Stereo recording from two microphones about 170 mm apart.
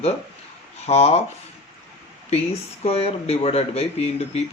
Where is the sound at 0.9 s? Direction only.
40° left (ahead or behind).